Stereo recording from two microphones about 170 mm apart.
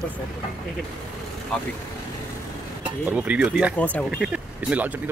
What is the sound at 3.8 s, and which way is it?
Speech, 5° left (ahead or behind).